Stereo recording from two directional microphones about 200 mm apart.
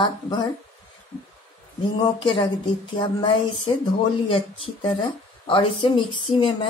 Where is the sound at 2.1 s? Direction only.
25° left (ahead or behind).